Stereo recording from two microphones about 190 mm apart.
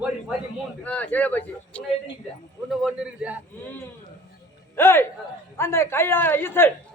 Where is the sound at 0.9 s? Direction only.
10° left (ahead or behind).